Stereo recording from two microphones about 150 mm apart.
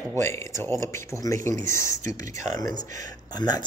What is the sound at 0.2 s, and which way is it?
Speech, 15° left (ahead or behind).